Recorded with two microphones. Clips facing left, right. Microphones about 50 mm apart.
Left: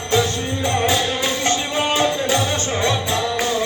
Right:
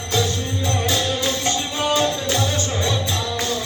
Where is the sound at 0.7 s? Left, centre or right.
Centre.